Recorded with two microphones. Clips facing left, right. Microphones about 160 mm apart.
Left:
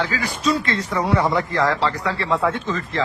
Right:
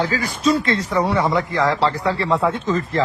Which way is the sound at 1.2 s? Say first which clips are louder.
Right 1 dB; 15° right (ahead or behind).